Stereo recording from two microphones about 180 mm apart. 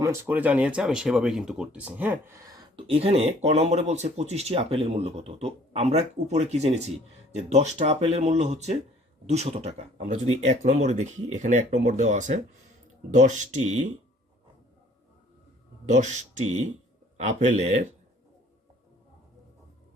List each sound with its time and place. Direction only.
0.0 s speech: 10° right (ahead or behind); by 13.9 s 40° right (ahead or behind)
15.9 s speech: 40° right (ahead or behind)